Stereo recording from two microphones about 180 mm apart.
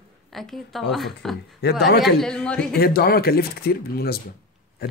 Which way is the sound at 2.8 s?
60° left (ahead or behind).